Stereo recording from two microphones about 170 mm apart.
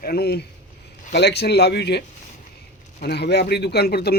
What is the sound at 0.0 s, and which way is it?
Speech, 65° left (ahead or behind).